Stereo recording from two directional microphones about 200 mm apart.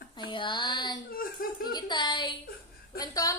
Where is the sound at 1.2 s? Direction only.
45° left (ahead or behind).